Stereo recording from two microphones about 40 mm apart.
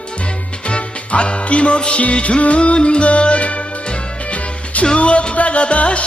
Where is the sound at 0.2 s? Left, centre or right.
Left.